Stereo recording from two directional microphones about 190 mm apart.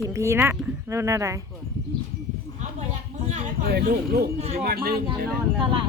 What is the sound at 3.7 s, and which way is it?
Speech, 55° right (ahead or behind).